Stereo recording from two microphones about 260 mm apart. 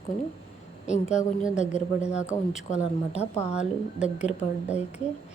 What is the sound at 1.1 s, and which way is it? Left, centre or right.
Speech, left.